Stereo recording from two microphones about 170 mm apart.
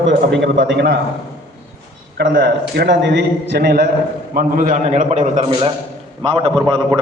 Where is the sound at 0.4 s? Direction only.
90° right.